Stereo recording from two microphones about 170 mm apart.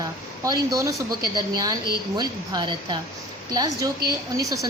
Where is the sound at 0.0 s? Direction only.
20° right (ahead or behind).